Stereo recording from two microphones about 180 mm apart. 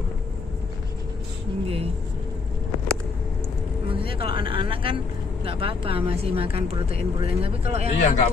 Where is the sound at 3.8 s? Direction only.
30° right (ahead or behind).